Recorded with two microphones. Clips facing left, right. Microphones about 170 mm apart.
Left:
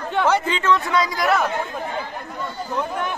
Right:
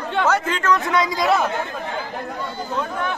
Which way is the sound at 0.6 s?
Centre (ahead or behind).